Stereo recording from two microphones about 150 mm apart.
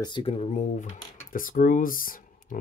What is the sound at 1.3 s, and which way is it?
Speech, 70° left (ahead or behind).